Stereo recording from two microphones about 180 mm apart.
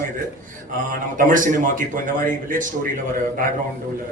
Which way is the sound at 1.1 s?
50° right (ahead or behind).